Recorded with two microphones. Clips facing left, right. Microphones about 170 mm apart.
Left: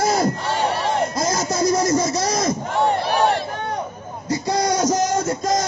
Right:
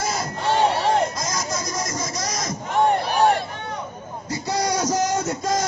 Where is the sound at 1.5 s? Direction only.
30° left (ahead or behind).